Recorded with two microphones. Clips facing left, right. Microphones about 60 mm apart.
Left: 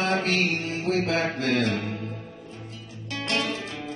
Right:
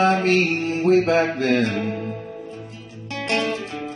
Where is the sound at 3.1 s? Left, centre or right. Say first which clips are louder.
Right 5 dB; right.